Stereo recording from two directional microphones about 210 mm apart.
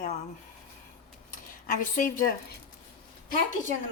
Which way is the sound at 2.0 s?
40° left (ahead or behind).